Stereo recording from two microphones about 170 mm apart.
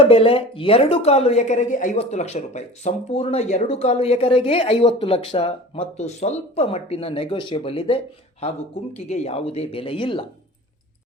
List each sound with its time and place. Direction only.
0.0 s a woman's voice: 35° left (ahead or behind)